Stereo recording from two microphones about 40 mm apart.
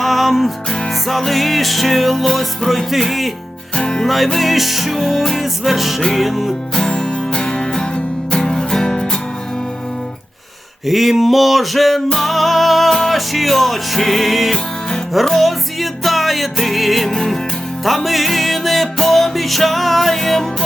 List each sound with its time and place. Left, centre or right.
0.0 s music: centre
3.8 s music: centre
4.0 s music: centre
6.7 s music: centre
10.8 s music: centre
14.5 s music: centre
15.1 s music: centre
17.1 s music: centre
17.8 s music: centre